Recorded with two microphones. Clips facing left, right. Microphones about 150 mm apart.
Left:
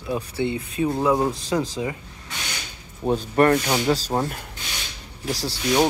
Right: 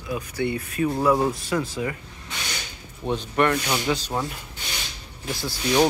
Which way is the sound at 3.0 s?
40° left (ahead or behind).